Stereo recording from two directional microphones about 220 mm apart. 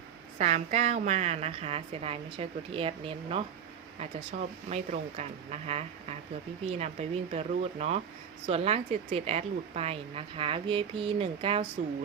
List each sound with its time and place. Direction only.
0.3 s speech: 30° right (ahead or behind)